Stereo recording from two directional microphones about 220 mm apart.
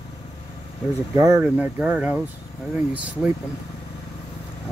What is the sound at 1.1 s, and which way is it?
Speech, 15° right (ahead or behind).